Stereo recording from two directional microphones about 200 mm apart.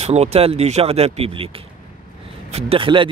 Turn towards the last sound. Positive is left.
turn(degrees=-25)  # may be behind; listen again after turning